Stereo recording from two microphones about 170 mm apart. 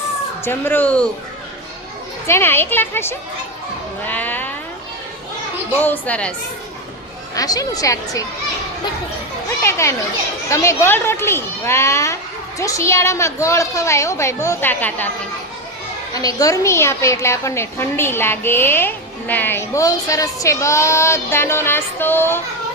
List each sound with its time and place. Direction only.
0.4 s a woman's voice: 10° left (ahead or behind)
2.2 s a woman's voice: 15° left (ahead or behind)
4.0 s sheep: 10° left (ahead or behind)
5.8 s a woman's voice: 10° left (ahead or behind)
7.3 s speech: 20° left (ahead or behind)
9.6 s a woman's voice: 15° left (ahead or behind)
16.1 s a woman's voice: 20° left (ahead or behind)